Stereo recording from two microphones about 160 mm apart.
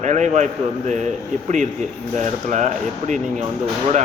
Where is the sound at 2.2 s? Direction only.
50° right (ahead or behind).